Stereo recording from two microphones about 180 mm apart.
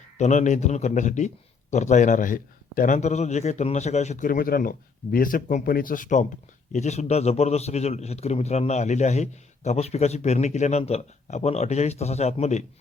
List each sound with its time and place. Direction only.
0.2 s a man's voice: 40° left (ahead or behind)